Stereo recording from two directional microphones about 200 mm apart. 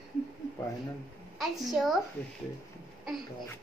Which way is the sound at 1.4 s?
Centre (ahead or behind).